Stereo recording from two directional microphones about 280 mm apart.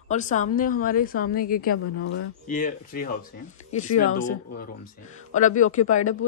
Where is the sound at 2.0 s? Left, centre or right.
Left.